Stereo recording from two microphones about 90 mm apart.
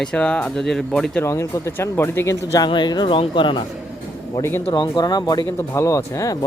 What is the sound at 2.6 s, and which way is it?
Speech, 55° left (ahead or behind).